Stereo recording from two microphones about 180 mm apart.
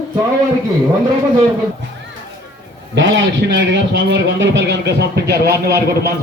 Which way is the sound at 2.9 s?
90° right.